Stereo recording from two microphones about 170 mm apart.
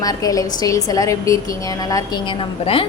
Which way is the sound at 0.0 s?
20° left (ahead or behind).